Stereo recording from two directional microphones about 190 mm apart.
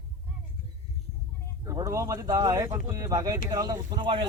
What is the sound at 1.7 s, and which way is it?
Speech, 15° right (ahead or behind).